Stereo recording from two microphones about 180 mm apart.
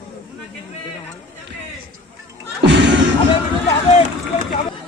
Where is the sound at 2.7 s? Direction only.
85° right.